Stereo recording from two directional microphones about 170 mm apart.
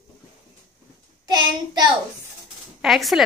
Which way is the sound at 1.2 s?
25° right (ahead or behind).